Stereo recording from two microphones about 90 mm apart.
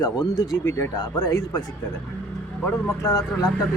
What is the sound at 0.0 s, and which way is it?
Speech, 45° left (ahead or behind).